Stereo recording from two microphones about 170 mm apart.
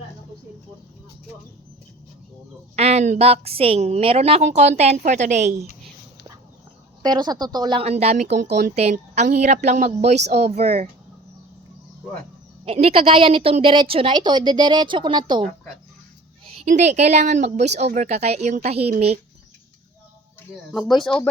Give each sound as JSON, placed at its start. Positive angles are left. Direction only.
{"t": 2.7, "sound": "a woman's voice", "side_deg": -40}
{"t": 7.0, "sound": "a woman's voice", "side_deg": -25}
{"t": 12.6, "sound": "a woman's voice", "side_deg": -35}
{"t": 16.6, "sound": "a woman's voice", "side_deg": -45}
{"t": 20.7, "sound": "speech", "side_deg": 0}